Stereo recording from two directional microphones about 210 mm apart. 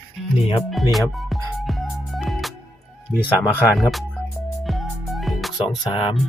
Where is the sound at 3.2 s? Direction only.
10° left (ahead or behind).